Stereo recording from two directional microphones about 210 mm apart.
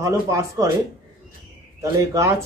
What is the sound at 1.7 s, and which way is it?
Speech, 15° right (ahead or behind).